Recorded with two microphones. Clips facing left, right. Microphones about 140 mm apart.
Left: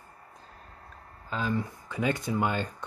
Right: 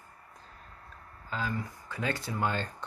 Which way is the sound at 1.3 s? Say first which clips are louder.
Left 4 dB; 20° left (ahead or behind).